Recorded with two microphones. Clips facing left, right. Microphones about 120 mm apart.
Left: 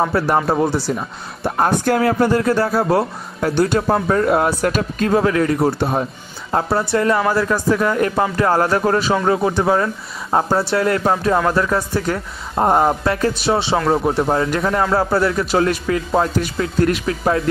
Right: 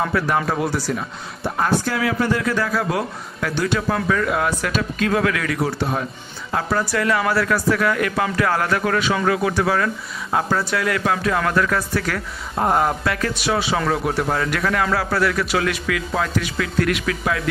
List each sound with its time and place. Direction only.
0.1 s speech: 35° left (ahead or behind)
1.4 s speech: 45° left (ahead or behind)
5.1 s speech: 30° left (ahead or behind)
11.3 s speech: 20° left (ahead or behind)